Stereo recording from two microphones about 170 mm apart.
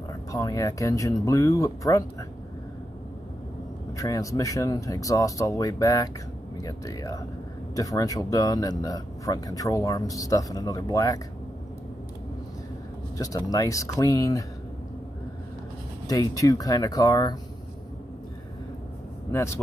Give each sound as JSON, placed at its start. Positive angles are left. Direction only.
{"t": 0.1, "sound": "speech", "side_deg": 20}
{"t": 3.9, "sound": "speech", "side_deg": 20}
{"t": 13.2, "sound": "speech", "side_deg": 20}
{"t": 16.1, "sound": "speech", "side_deg": 20}
{"t": 19.3, "sound": "speech", "side_deg": 15}